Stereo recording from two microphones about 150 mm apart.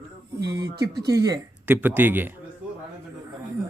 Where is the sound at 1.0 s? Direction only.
25° right (ahead or behind).